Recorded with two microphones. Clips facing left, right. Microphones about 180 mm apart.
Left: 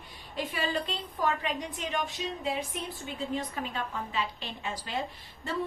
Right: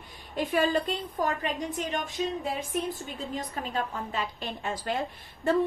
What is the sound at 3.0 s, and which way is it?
A woman's voice, 40° right (ahead or behind).